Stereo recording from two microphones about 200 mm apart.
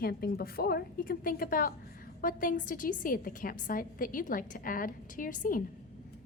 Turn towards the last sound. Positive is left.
turn(degrees=40)  # may be behind; listen again after turning